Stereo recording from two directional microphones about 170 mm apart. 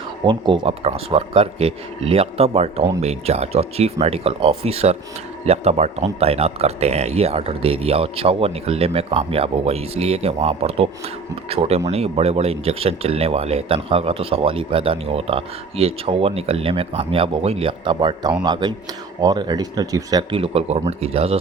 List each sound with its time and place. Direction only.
0.3 s a man's voice: 30° right (ahead or behind)